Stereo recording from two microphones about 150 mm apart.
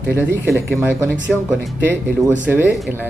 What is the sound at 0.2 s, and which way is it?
Speech, 15° right (ahead or behind).